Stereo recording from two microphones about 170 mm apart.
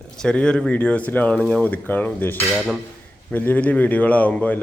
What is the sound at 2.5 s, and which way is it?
Cutlery, 5° right (ahead or behind).